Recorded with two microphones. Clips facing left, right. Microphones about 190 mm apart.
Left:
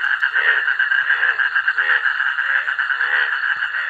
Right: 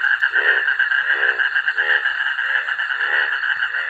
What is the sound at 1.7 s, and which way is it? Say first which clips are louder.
Frog: right 4 dB; 30° right (ahead or behind).